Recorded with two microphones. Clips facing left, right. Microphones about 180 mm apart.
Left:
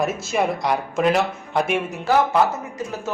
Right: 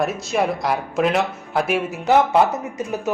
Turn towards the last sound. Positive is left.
turn(degrees=-20)  # may be behind; listen again after turning